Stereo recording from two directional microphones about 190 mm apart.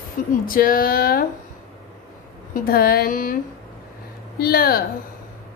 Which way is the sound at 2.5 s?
50° left (ahead or behind).